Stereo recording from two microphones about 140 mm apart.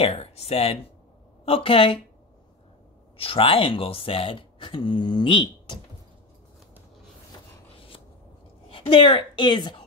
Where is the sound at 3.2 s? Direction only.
40° left (ahead or behind).